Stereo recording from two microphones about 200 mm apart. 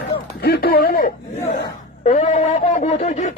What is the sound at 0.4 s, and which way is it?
Speech, 50° left (ahead or behind).